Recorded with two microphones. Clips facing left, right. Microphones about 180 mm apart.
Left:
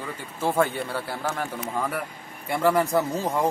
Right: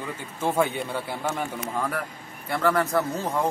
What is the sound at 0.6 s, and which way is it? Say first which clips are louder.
A man's voice: left 1 dB; 10° right (ahead or behind).